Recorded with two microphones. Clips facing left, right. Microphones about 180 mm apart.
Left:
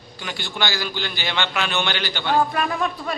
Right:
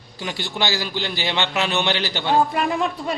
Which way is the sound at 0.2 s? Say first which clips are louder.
Right 2 dB; 30° right (ahead or behind).